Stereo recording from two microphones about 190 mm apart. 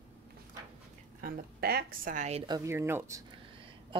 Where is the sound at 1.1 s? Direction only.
50° right (ahead or behind).